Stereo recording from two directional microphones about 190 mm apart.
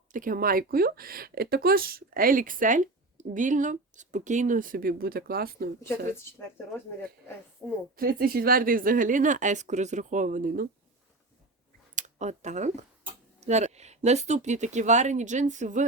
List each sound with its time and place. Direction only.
0.1 s speech: 45° right (ahead or behind)
7.9 s speech: 50° right (ahead or behind)
11.9 s speech: 40° right (ahead or behind)